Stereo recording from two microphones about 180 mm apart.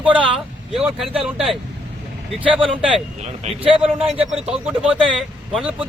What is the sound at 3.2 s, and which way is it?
Speech, 35° right (ahead or behind).